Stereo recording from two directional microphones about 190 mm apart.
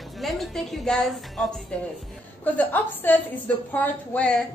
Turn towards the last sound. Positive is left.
turn(degrees=10)  # may be behind; listen again after turning